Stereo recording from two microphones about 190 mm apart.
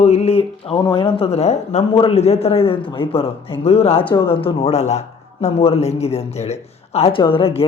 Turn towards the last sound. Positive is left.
turn(degrees=30)  # may be behind; listen again after turning